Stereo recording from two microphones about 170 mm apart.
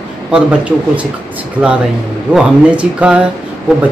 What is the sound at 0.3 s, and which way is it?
Speech, 5° right (ahead or behind).